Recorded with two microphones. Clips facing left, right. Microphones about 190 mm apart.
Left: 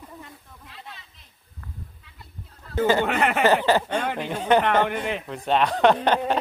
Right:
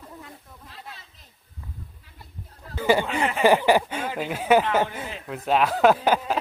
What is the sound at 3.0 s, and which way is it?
Speech, 65° left (ahead or behind).